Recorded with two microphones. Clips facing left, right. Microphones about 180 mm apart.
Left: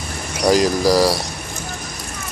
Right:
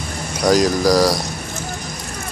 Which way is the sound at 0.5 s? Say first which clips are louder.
Even; 5° left (ahead or behind).